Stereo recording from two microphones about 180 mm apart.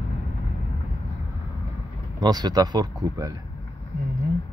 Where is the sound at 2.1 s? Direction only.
20° right (ahead or behind).